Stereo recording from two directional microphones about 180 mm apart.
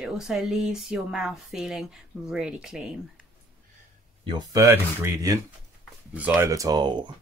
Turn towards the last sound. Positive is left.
turn(degrees=-25)  # may be behind; listen again after turning